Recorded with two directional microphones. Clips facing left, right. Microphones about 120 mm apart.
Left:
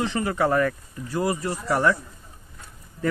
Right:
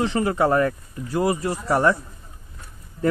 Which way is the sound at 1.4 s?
35° right (ahead or behind).